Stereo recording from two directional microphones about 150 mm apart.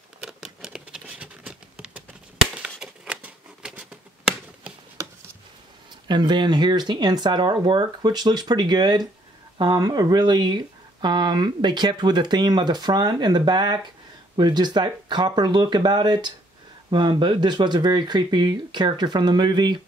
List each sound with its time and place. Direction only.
0.2 s patter: 5° right (ahead or behind)
5.0 s a sound: 20° right (ahead or behind)
6.0 s speech: 30° right (ahead or behind)